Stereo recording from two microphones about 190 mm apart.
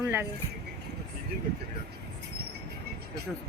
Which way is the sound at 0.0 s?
10° right (ahead or behind).